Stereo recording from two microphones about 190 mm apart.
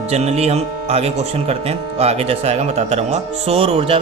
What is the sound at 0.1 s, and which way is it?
Speech, 35° right (ahead or behind).